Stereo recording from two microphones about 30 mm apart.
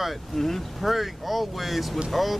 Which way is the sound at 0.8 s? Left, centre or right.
Centre.